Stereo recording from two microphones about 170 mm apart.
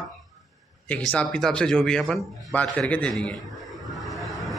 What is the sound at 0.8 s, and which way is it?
A man's voice, 5° left (ahead or behind).